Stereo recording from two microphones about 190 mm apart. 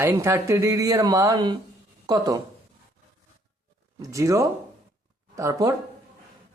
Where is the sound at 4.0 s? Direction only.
15° right (ahead or behind).